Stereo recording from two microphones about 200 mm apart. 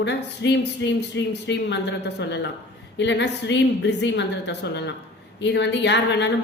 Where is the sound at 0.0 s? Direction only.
60° left (ahead or behind).